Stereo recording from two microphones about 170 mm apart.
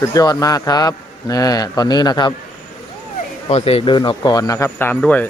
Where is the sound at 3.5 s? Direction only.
35° left (ahead or behind); by 5.3 s 10° left (ahead or behind).